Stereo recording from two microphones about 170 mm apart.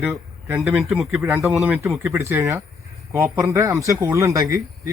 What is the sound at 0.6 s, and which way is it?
Speech, centre (ahead or behind).